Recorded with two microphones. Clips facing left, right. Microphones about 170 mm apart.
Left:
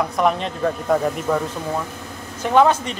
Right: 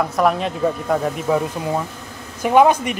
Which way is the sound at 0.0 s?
Centre (ahead or behind).